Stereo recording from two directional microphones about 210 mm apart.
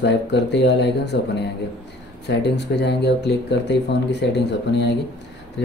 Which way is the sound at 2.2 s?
55° left (ahead or behind).